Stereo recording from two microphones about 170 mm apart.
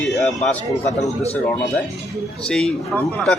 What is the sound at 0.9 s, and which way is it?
Speech, 40° left (ahead or behind).